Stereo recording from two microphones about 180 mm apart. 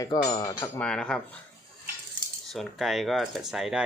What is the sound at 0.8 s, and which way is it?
Speech, 5° left (ahead or behind).